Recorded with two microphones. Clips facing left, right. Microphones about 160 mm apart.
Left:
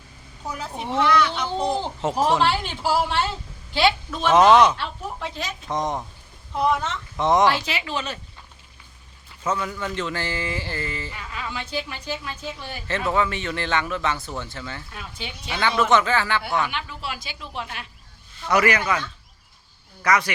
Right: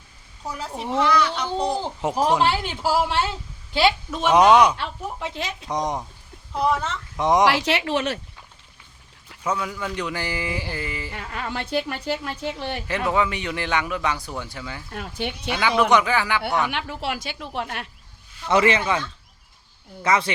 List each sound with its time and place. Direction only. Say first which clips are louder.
0.4 s a woman's voice: right 1 dB; centre (ahead or behind)
6.5 s a woman's voice: even; centre (ahead or behind)
7.2 s speech: even; 15° right (ahead or behind)
7.4 s speech: right 2 dB; 85° right
9.4 s speech: even; 10° right (ahead or behind)
11.1 s a woman's voice: right 3 dB; 55° right (ahead or behind)
13.1 s speech: even; 15° right (ahead or behind)
14.9 s a woman's voice: right 7 dB; 60° right (ahead or behind)
15.4 s a woman's voice: right 1 dB; 5° right (ahead or behind)
16.7 s a woman's voice: right 4 dB; 65° right (ahead or behind)
18.4 s a man's voice: right 1 dB; 25° right (ahead or behind)